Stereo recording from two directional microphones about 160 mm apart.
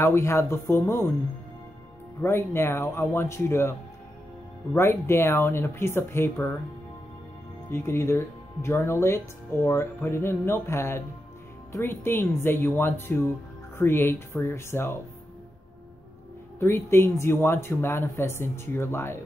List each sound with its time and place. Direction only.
0.0 s speech: 15° left (ahead or behind)
2.2 s speech: 15° left (ahead or behind)
4.7 s speech: 15° left (ahead or behind)
7.7 s speech: 15° left (ahead or behind)
16.5 s speech: 15° left (ahead or behind)